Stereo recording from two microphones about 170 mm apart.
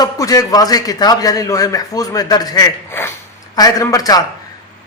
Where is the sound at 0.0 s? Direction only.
20° left (ahead or behind).